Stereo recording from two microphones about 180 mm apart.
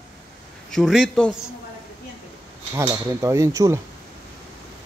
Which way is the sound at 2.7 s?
15° right (ahead or behind).